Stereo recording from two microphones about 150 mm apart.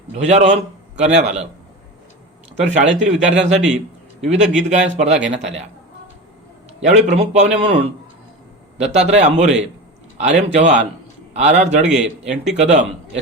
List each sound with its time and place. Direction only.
0.3 s a man's voice: 50° right (ahead or behind)
2.6 s a man's voice: 50° right (ahead or behind)
6.7 s a man's voice: 50° right (ahead or behind)